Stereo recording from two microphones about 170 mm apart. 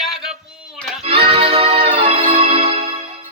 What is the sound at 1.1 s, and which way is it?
Music, 35° right (ahead or behind).